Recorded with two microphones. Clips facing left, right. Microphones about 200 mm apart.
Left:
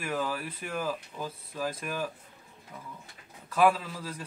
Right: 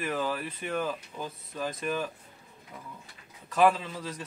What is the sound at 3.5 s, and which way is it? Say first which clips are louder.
Speech: right 1 dB; 5° left (ahead or behind).